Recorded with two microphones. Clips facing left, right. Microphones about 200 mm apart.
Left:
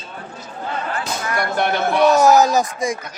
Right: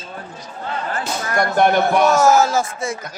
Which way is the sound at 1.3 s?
50° right (ahead or behind).